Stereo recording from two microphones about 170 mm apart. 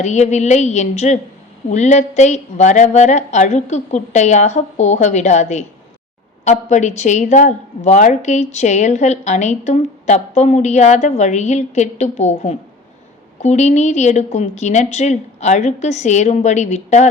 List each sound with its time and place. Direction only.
0.0 s a woman's voice: 45° left (ahead or behind)